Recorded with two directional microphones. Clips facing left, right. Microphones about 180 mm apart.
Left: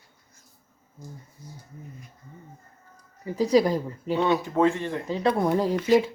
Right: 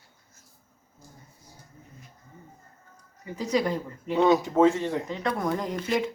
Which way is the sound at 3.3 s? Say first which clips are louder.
Left 6 dB; 35° left (ahead or behind).